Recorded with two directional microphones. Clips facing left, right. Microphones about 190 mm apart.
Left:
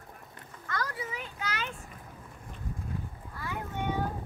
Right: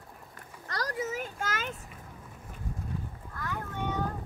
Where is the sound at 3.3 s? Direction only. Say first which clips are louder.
Even; 15° left (ahead or behind).